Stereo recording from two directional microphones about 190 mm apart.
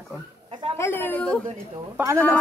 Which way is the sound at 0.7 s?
10° left (ahead or behind).